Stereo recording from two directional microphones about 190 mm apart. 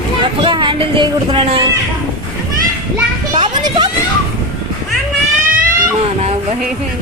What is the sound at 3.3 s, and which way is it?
Children playing, 25° right (ahead or behind).